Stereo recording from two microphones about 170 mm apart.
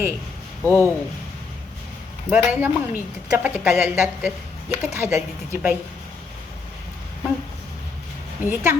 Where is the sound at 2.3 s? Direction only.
5° right (ahead or behind).